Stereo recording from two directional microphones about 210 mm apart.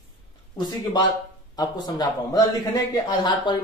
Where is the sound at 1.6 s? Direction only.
20° left (ahead or behind).